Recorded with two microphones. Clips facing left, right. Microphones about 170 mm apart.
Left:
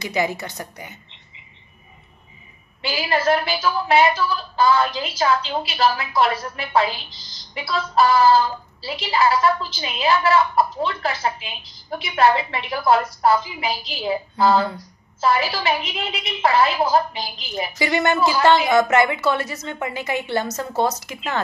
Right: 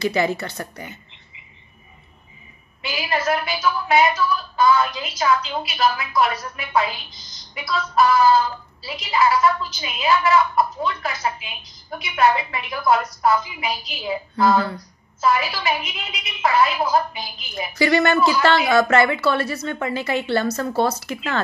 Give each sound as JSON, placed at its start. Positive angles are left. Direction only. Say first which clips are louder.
{"t": 0.0, "sound": "a woman's voice", "louder": "right 3 dB", "side_deg": 15}
{"t": 2.8, "sound": "a woman's voice", "louder": "left 3 dB", "side_deg": 30}
{"t": 17.7, "sound": "a woman's voice", "louder": "right 3 dB", "side_deg": 20}